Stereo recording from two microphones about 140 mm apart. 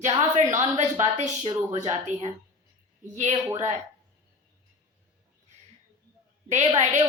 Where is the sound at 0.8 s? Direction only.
60° right (ahead or behind).